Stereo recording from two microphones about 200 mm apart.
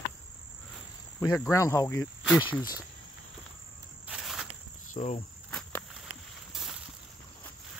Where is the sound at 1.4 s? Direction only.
15° left (ahead or behind).